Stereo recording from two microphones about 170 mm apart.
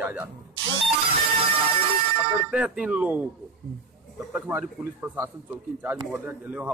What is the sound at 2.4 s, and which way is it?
Speech, 5° right (ahead or behind).